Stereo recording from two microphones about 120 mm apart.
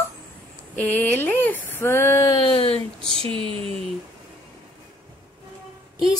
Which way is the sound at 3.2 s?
45° right (ahead or behind).